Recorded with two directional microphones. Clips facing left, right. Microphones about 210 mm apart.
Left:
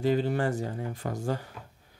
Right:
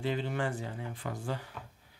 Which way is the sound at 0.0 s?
40° left (ahead or behind).